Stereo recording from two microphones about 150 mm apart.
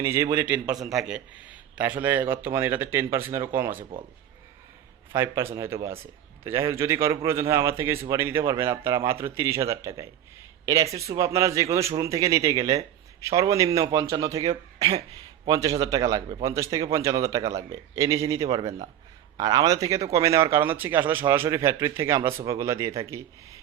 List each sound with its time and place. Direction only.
0.0 s a man's voice: 20° right (ahead or behind)
0.7 s a man's voice: centre (ahead or behind)
5.1 s a man's voice: 20° right (ahead or behind)